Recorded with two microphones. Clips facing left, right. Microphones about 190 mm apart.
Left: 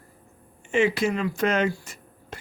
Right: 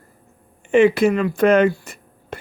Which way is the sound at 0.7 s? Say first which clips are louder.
Right 8 dB; 60° right (ahead or behind).